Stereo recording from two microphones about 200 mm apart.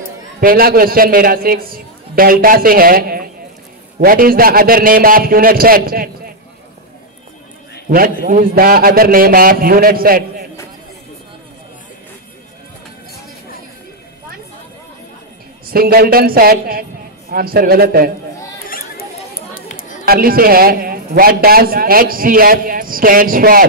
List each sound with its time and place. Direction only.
0.4 s a man's voice: 45° right (ahead or behind)
7.9 s a man's voice: 45° right (ahead or behind)
15.6 s a man's voice: 50° right (ahead or behind)
20.1 s a man's voice: 45° right (ahead or behind)